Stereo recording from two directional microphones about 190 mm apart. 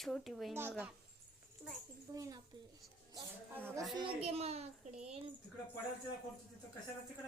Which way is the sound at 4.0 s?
30° right (ahead or behind).